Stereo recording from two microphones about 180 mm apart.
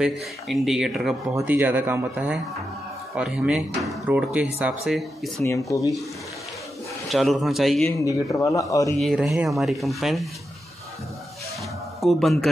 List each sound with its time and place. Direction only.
0.0 s speech: centre (ahead or behind)
5.4 s speech: 15° left (ahead or behind)
7.1 s speech: centre (ahead or behind)
8.0 s speech: 20° left (ahead or behind)
9.0 s speech: centre (ahead or behind)
12.0 s speech: centre (ahead or behind)